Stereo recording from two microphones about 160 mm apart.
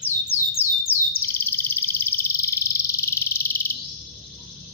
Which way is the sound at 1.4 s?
15° left (ahead or behind).